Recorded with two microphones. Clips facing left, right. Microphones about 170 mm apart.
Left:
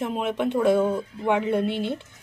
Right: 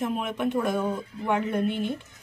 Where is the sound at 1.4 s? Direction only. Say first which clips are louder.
Left 2 dB; 75° left (ahead or behind).